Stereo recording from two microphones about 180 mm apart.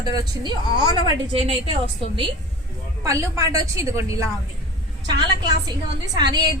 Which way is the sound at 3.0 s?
20° right (ahead or behind).